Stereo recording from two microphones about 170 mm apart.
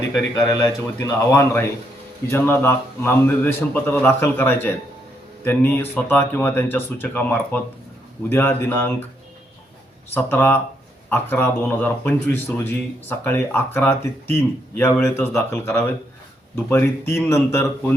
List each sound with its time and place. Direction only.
0.1 s speech: 15° left (ahead or behind)
10.2 s speech: 15° left (ahead or behind)